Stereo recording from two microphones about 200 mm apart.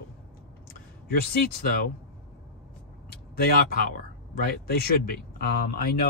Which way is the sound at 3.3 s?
50° left (ahead or behind).